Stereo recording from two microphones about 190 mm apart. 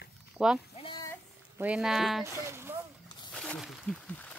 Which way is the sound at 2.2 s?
15° right (ahead or behind).